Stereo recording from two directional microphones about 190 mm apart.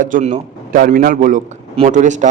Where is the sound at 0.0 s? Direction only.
40° right (ahead or behind).